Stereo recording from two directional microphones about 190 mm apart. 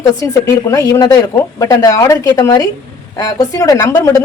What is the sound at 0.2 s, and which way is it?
A woman's voice, 20° left (ahead or behind).